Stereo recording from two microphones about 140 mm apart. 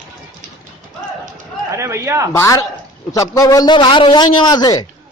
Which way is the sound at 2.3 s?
20° left (ahead or behind).